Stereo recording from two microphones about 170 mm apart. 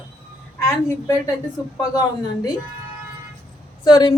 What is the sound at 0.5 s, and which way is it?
Speech, 15° left (ahead or behind).